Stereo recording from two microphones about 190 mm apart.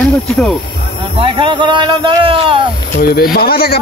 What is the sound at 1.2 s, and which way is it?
Speech, 25° right (ahead or behind).